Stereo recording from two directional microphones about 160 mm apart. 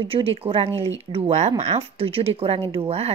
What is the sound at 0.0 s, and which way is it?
Speech, 35° right (ahead or behind).